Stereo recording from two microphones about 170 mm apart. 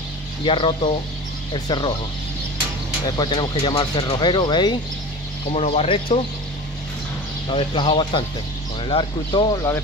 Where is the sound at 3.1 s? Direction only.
25° left (ahead or behind).